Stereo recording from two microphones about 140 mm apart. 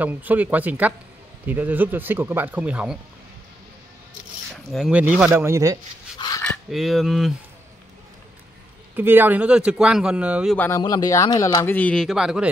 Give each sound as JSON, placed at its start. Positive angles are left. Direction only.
{"t": 0.0, "sound": "speech", "side_deg": -10}
{"t": 4.7, "sound": "speech", "side_deg": -5}
{"t": 5.3, "sound": "speech", "side_deg": -20}
{"t": 6.1, "sound": "a sound", "side_deg": 30}
{"t": 6.7, "sound": "speech", "side_deg": 0}
{"t": 8.9, "sound": "speech", "side_deg": -15}
{"t": 10.8, "sound": "speech", "side_deg": 25}